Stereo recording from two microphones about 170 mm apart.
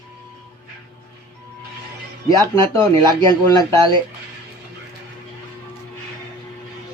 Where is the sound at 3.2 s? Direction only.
20° left (ahead or behind).